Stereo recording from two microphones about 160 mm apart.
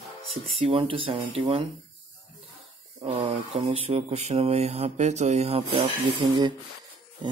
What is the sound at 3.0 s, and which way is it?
Speech, 40° right (ahead or behind).